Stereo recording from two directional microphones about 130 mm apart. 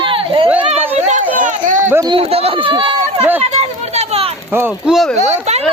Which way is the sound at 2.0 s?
45° right (ahead or behind).